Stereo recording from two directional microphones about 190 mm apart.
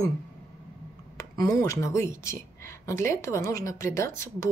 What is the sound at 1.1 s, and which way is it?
Speech, 20° left (ahead or behind).